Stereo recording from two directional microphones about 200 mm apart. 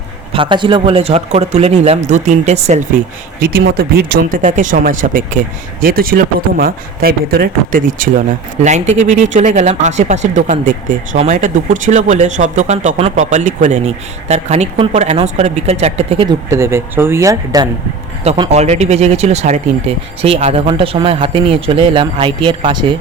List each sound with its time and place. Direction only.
0.3 s speech: 25° right (ahead or behind)
3.4 s speech: 50° right (ahead or behind); by 16.3 s 30° right (ahead or behind)
16.5 s speech: 15° right (ahead or behind)
18.2 s speech: 30° right (ahead or behind)